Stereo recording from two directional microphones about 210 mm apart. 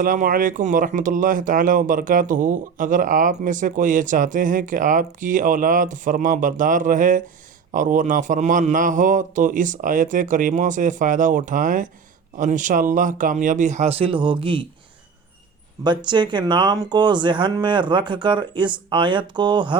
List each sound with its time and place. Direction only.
0.0 s speech: 40° right (ahead or behind); by 14.6 s 25° right (ahead or behind)
15.8 s speech: 20° right (ahead or behind)